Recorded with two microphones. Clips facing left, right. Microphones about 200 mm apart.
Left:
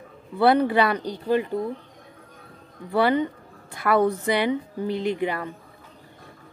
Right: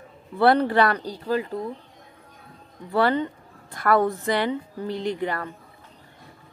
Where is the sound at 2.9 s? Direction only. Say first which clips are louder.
Left 1 dB; 15° left (ahead or behind).